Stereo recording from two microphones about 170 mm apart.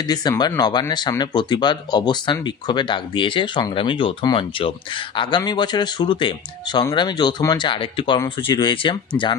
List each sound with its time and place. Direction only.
0.1 s speech: 25° left (ahead or behind)